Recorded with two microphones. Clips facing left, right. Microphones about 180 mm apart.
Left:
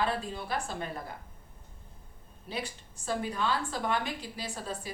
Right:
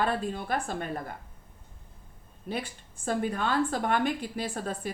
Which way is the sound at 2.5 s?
50° right (ahead or behind).